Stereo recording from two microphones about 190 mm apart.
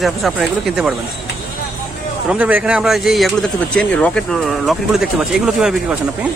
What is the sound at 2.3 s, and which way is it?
Speech, 5° right (ahead or behind).